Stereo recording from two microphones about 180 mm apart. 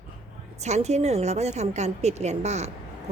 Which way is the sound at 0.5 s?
40° right (ahead or behind).